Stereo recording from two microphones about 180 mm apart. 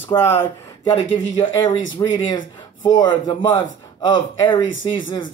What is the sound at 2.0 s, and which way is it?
Speech, 20° left (ahead or behind).